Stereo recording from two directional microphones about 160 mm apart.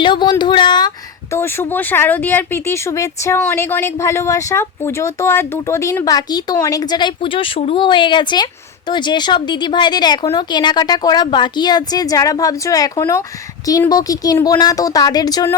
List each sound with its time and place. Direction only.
0.0 s speech: 30° left (ahead or behind)